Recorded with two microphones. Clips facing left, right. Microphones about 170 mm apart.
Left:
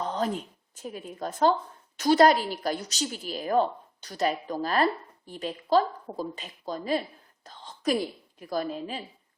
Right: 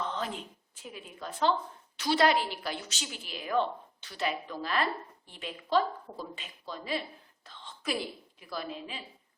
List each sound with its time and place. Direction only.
0.0 s a woman's voice: 40° left (ahead or behind)
7.4 s a sound: 40° left (ahead or behind)
8.4 s a woman's voice: 45° left (ahead or behind)